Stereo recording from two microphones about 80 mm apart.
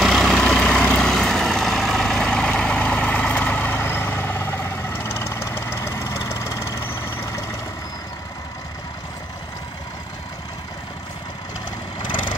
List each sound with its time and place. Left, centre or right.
0.0 s vehicle: centre; by 7.4 s left